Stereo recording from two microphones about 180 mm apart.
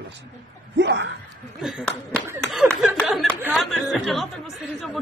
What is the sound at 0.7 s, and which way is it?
Gasp, 80° right.